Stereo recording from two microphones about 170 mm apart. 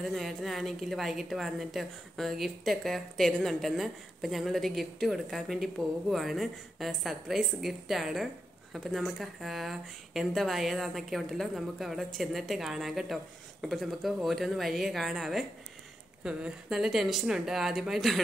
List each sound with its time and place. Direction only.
0.0 s a woman's voice: centre (ahead or behind)